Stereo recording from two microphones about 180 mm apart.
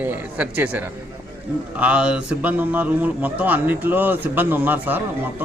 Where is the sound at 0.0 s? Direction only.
10° right (ahead or behind).